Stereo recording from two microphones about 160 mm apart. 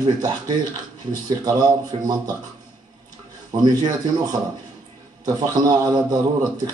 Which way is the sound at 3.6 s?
25° right (ahead or behind).